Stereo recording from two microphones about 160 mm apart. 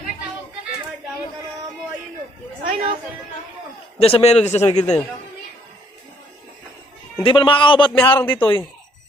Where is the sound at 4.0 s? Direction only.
35° left (ahead or behind).